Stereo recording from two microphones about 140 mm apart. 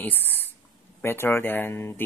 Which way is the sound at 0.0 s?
10° left (ahead or behind).